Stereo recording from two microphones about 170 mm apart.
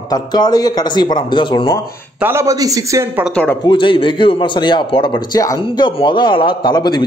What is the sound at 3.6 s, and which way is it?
A man's voice, 30° left (ahead or behind).